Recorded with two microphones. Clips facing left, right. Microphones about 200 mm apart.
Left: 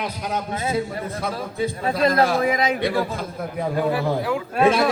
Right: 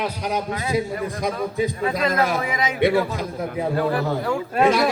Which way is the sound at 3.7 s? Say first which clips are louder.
Left 2 dB; 5° left (ahead or behind).